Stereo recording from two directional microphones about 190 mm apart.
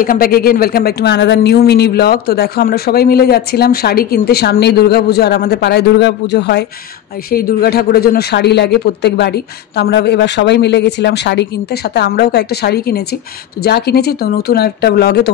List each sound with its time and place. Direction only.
0.0 s speech: 50° left (ahead or behind)
7.2 s speech: 50° left (ahead or behind)